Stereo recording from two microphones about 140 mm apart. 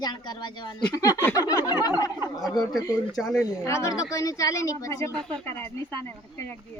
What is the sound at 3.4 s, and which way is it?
A woman's voice, 20° left (ahead or behind).